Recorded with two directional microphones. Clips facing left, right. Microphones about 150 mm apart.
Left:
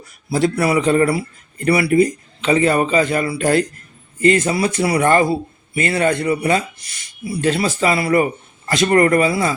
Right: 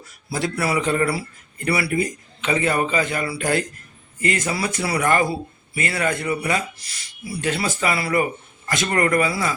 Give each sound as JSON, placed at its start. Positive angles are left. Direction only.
{"t": 0.3, "sound": "speech", "side_deg": 20}